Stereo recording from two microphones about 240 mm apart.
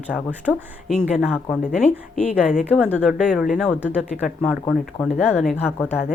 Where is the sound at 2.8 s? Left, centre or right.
Centre.